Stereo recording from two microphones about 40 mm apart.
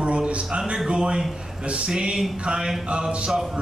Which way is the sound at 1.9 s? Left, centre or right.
Centre.